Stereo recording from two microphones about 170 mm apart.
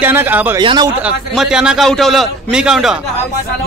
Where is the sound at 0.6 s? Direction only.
25° right (ahead or behind).